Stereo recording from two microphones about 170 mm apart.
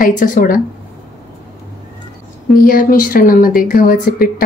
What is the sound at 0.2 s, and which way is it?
Speech, 50° left (ahead or behind).